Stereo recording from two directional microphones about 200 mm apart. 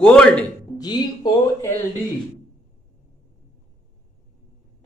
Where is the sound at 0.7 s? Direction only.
20° left (ahead or behind).